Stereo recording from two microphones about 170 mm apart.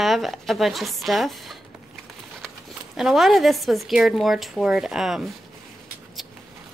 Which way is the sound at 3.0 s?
Centre (ahead or behind).